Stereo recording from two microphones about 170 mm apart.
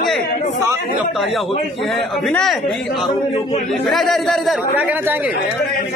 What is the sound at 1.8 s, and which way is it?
A man's voice, centre (ahead or behind).